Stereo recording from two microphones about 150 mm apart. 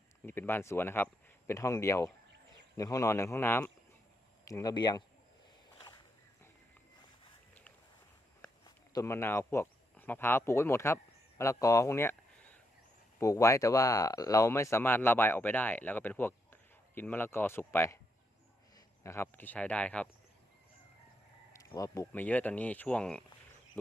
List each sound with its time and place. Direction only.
0.3 s speech: 15° left (ahead or behind)
8.9 s speech: 20° left (ahead or behind)
19.0 s speech: 15° left (ahead or behind)
21.8 s speech: 20° left (ahead or behind); by 23.2 s 5° left (ahead or behind)